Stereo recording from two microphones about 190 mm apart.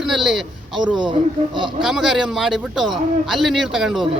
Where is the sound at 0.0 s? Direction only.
Centre (ahead or behind).